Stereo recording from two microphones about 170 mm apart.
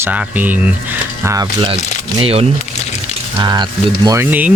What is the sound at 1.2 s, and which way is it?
Speech, 20° right (ahead or behind).